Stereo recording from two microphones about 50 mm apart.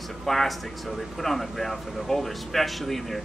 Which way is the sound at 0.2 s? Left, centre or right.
Centre.